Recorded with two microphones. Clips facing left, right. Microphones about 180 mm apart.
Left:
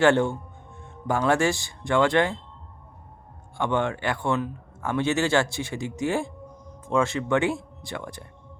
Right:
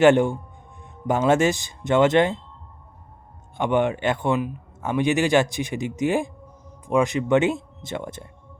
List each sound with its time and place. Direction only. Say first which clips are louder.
0.0 s speech: right 4 dB; 15° right (ahead or behind)
3.6 s speech: right 4 dB; 20° right (ahead or behind)